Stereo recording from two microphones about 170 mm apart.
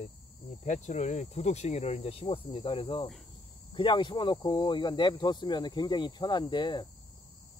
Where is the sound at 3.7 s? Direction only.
30° left (ahead or behind).